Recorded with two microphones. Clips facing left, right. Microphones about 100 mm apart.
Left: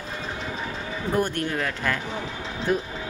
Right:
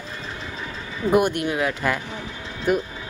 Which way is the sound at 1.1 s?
15° right (ahead or behind).